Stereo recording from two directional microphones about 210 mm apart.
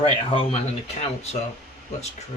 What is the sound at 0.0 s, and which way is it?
Speech, 30° left (ahead or behind).